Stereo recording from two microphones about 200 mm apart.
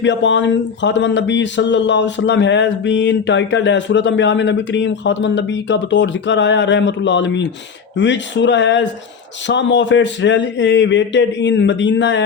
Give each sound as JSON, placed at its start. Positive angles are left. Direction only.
{"t": 0.0, "sound": "speech", "side_deg": 65}